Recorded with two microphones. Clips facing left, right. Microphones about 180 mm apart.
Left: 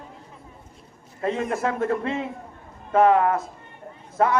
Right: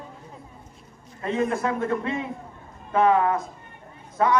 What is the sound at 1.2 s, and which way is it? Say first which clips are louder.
Speech: even; 45° left (ahead or behind).